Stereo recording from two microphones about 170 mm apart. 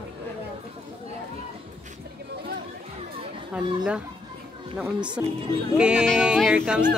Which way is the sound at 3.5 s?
5° right (ahead or behind).